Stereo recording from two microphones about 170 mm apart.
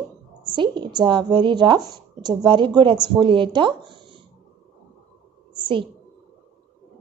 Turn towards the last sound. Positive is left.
turn(degrees=-30)  # may be behind; listen again after turning